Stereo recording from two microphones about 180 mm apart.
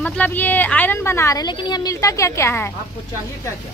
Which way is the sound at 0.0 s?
10° left (ahead or behind).